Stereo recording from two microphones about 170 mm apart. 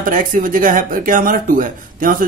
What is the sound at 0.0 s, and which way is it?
Speech, 50° right (ahead or behind).